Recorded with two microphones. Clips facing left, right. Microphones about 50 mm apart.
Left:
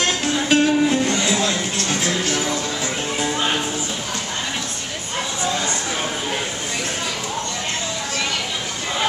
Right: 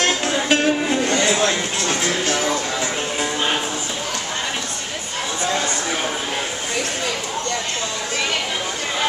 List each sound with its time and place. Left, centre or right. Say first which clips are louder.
0.0 s music: right 1 dB; centre
1.1 s music: right 2 dB; right
1.8 s speech: right 1 dB; centre